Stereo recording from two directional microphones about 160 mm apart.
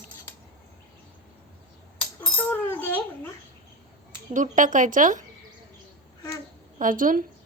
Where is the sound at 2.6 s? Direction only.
10° left (ahead or behind).